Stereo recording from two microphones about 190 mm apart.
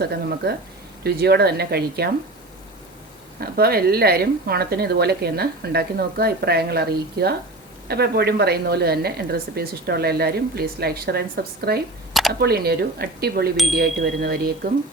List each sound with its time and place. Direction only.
0.0 s a woman's voice: 55° right (ahead or behind)
3.4 s a woman's voice: 50° right (ahead or behind)